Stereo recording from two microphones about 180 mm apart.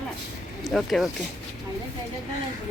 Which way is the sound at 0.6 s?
Centre (ahead or behind).